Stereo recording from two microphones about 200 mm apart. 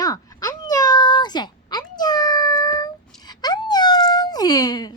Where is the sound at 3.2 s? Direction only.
20° left (ahead or behind).